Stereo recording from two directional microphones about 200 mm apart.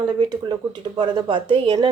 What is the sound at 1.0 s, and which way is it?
Speech, 25° right (ahead or behind).